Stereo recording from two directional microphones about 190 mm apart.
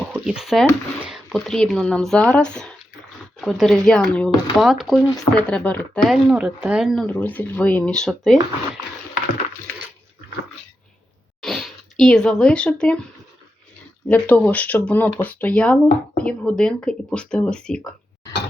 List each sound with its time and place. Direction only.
0.1 s speech: 5° right (ahead or behind)
11.4 s speech: centre (ahead or behind)
14.1 s speech: 10° left (ahead or behind)